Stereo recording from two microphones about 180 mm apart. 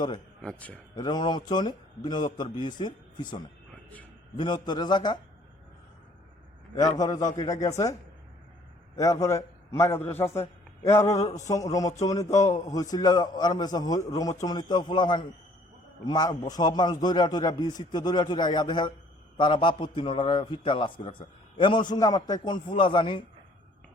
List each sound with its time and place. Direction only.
0.4 s speech: 10° left (ahead or behind)
0.9 s a man's voice: 25° left (ahead or behind)
6.7 s a man's voice: 20° left (ahead or behind)
9.0 s a man's voice: 20° left (ahead or behind)